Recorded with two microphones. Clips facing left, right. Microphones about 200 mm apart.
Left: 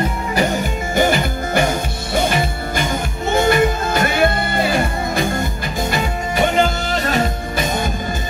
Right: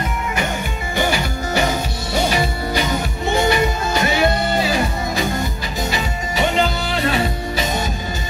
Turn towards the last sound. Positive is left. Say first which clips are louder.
# left 1 dB
turn(degrees=50)  # may be behind; listen again after turning